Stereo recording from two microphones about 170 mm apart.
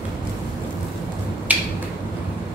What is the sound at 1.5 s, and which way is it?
Finger snapping, 10° right (ahead or behind).